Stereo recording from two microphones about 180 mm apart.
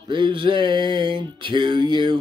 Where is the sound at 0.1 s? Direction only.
25° right (ahead or behind).